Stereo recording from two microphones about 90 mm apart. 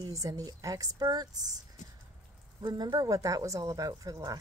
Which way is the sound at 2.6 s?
50° right (ahead or behind).